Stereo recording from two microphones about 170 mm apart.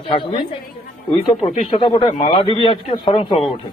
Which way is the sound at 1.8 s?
25° left (ahead or behind).